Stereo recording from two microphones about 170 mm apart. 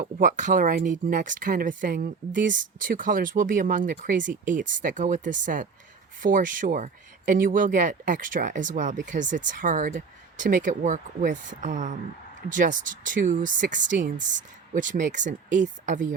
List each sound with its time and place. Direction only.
0.0 s speech: 50° right (ahead or behind)